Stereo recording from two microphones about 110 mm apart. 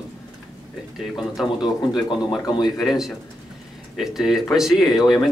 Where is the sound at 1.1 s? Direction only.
Centre (ahead or behind).